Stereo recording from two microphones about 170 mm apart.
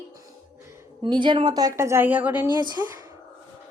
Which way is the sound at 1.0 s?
30° right (ahead or behind).